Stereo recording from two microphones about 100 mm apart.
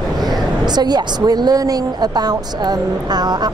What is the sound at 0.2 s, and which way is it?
A woman's voice, 45° right (ahead or behind).